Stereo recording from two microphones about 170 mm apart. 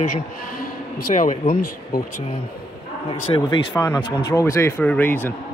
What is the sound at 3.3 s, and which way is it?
A man's voice, 20° left (ahead or behind).